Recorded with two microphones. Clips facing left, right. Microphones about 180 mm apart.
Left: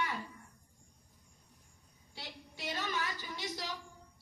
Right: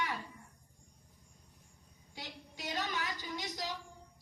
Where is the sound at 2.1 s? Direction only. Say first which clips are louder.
Right 1 dB; 15° right (ahead or behind).